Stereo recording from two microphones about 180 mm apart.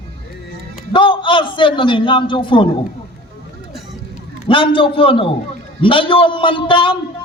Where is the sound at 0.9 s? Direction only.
30° left (ahead or behind).